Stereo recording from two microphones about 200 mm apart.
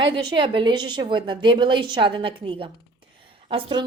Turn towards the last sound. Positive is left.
turn(degrees=-25)  # may be behind; listen again after turning